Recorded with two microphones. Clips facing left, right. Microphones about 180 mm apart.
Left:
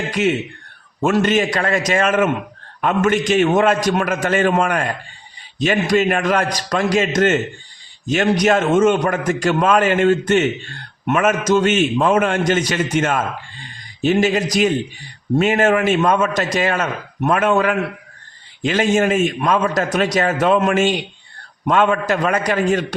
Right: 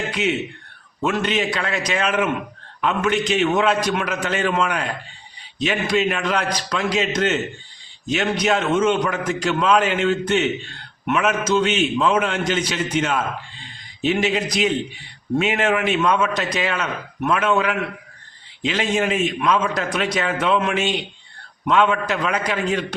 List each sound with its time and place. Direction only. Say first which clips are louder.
0.1 s a man's voice: left 4 dB; 45° left (ahead or behind)